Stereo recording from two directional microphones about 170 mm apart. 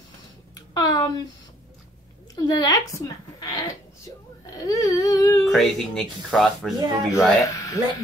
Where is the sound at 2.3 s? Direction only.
20° left (ahead or behind).